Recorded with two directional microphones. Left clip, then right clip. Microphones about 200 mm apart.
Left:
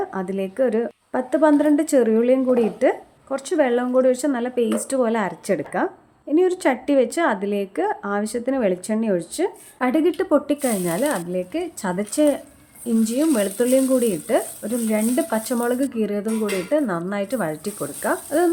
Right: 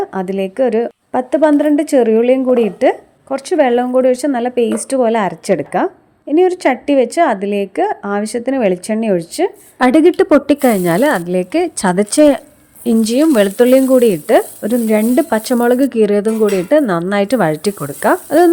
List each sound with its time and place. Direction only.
0.0 s a woman's voice: 25° right (ahead or behind)
9.7 s a woman's voice: 40° right (ahead or behind)